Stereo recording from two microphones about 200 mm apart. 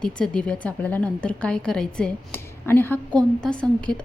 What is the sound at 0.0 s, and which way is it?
A woman's voice, 5° left (ahead or behind).